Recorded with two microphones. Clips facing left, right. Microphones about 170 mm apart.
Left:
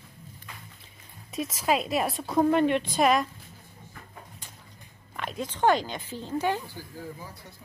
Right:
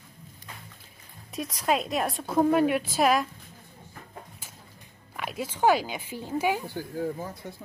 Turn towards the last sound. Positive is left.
turn(degrees=-60)  # may be behind; listen again after turning